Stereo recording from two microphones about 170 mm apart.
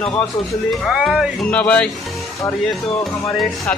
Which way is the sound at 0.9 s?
Centre (ahead or behind).